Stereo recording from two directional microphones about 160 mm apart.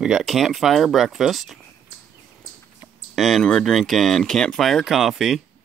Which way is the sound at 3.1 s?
Centre (ahead or behind).